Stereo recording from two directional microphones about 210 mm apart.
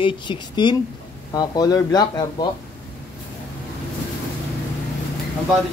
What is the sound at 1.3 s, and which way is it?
Speech, 15° left (ahead or behind).